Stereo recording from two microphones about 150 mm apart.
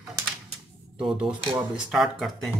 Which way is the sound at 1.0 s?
5° right (ahead or behind).